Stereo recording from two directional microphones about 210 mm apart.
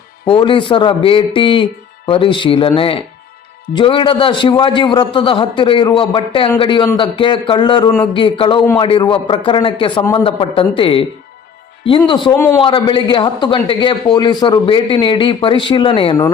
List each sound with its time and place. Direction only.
0.3 s a man's voice: 25° left (ahead or behind)